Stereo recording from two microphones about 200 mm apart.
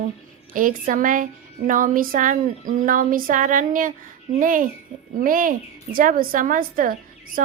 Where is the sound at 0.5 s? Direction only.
45° right (ahead or behind).